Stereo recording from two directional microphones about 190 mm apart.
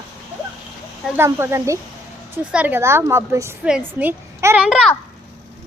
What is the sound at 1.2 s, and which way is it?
A woman's voice, 15° right (ahead or behind).